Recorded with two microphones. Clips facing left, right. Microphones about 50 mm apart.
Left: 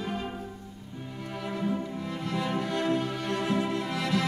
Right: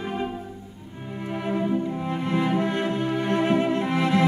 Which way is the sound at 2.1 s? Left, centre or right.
Right.